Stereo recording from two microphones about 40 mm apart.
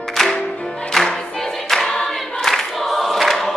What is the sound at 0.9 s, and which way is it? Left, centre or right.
Music, centre.